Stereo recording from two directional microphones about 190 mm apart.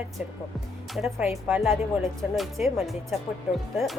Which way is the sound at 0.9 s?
Centre (ahead or behind).